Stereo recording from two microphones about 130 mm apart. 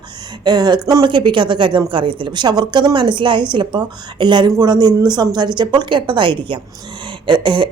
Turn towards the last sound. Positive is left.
turn(degrees=-40)  # may be behind; listen again after turning